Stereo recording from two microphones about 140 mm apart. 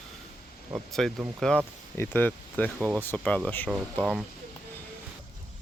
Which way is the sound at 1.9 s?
15° left (ahead or behind).